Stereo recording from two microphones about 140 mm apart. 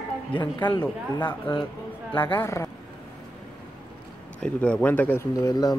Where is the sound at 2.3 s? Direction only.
20° left (ahead or behind).